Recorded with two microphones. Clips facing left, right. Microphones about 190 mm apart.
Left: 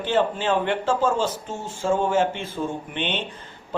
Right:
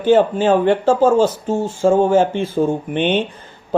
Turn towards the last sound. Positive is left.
turn(degrees=-45)  # may be behind; listen again after turning